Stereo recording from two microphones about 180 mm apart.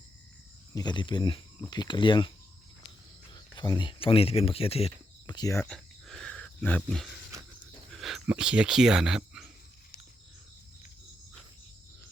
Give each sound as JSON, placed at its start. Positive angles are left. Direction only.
{"t": 0.7, "sound": "speech", "side_deg": 20}
{"t": 3.3, "sound": "speech", "side_deg": 25}
{"t": 5.2, "sound": "speech", "side_deg": 20}
{"t": 5.6, "sound": "cricket", "side_deg": 0}
{"t": 7.9, "sound": "speech", "side_deg": 0}